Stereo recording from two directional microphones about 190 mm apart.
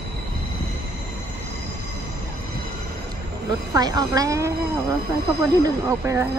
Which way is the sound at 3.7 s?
20° right (ahead or behind).